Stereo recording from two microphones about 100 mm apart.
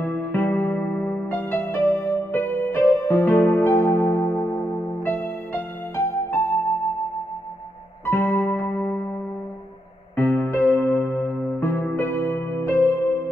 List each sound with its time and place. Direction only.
0.0 s music: 20° left (ahead or behind)
8.0 s music: 25° left (ahead or behind)
10.1 s music: 20° left (ahead or behind)